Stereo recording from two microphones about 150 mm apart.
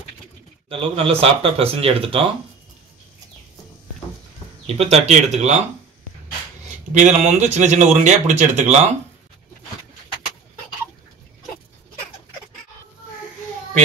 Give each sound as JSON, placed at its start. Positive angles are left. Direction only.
{"t": 0.7, "sound": "speech", "side_deg": -40}
{"t": 4.6, "sound": "speech", "side_deg": -45}
{"t": 6.9, "sound": "speech", "side_deg": -55}